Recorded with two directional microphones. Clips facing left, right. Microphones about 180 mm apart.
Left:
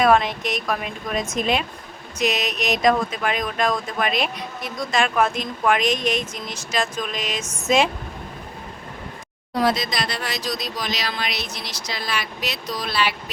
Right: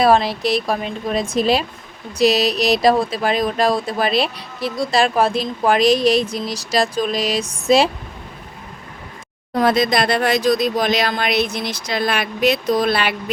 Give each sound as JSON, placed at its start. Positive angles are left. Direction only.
{"t": 0.0, "sound": "speech", "side_deg": -35}
{"t": 9.6, "sound": "speech", "side_deg": -55}